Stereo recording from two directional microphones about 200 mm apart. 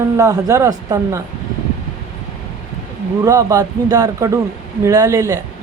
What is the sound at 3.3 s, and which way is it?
Speech, 15° right (ahead or behind).